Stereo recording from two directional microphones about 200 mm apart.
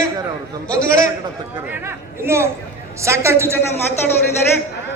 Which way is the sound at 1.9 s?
15° right (ahead or behind).